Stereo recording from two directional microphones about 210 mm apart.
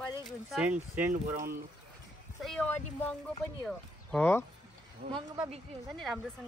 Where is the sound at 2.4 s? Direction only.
Centre (ahead or behind).